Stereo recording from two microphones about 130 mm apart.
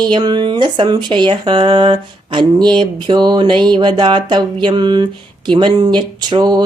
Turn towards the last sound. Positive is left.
turn(degrees=-35)  # may be behind; listen again after turning